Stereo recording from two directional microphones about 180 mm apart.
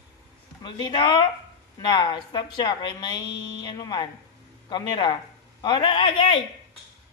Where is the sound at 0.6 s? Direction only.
25° left (ahead or behind).